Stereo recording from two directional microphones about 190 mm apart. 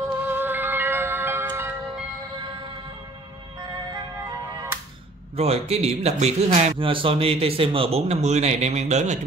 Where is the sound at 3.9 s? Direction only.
20° right (ahead or behind).